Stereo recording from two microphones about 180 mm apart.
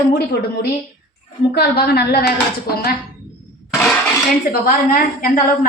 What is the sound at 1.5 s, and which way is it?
Speech, 60° left (ahead or behind).